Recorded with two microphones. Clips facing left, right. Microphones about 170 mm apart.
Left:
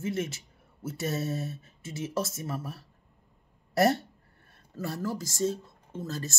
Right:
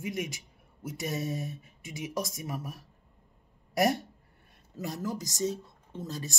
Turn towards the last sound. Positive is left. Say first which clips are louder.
# left 2 dB
turn(degrees=-15)  # may be behind; listen again after turning